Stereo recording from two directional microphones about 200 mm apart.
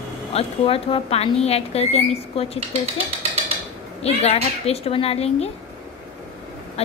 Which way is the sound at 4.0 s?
30° left (ahead or behind).